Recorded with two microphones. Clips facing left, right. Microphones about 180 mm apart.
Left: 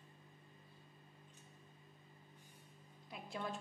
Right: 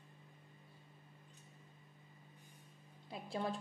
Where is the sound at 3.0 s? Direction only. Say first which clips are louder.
Right 4 dB; 30° right (ahead or behind).